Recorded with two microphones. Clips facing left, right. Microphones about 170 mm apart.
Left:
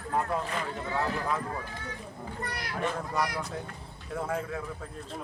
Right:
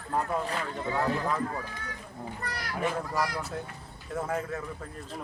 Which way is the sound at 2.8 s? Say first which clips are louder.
Right 1 dB; 5° right (ahead or behind).